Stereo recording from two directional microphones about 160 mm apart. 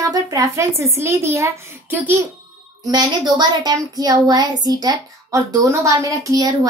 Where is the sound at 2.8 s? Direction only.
25° right (ahead or behind).